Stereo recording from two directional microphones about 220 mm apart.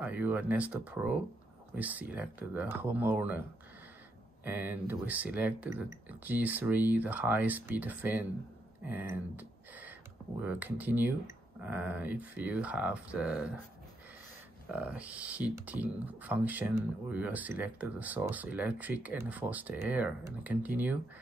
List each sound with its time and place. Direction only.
0.0 s speech: 5° right (ahead or behind)
4.5 s speech: 10° right (ahead or behind)
8.8 s a sound: 10° right (ahead or behind)
10.4 s speech: 5° right (ahead or behind)
14.7 s speech: 5° right (ahead or behind)